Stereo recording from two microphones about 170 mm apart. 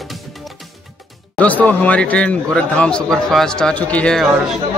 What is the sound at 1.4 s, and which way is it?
A man's voice, 10° left (ahead or behind).